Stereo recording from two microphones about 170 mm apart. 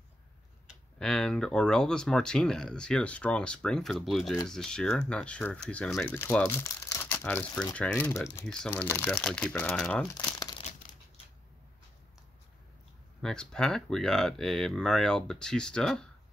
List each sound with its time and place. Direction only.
0.7 s speech: 5° left (ahead or behind)
6.6 s crumpling: 15° left (ahead or behind)
7.7 s speech: 10° left (ahead or behind)
10.1 s crumpling: 25° left (ahead or behind)
13.2 s speech: 5° left (ahead or behind)